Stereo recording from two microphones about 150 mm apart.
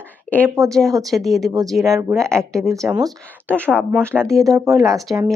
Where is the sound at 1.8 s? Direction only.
20° right (ahead or behind).